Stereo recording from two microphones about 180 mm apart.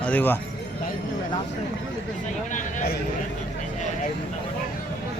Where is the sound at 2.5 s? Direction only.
45° left (ahead or behind).